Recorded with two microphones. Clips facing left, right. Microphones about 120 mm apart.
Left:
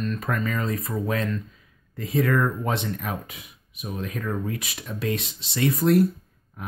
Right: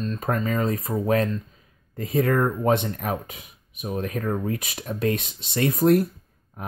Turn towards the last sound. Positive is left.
turn(degrees=-45)  # may be behind; listen again after turning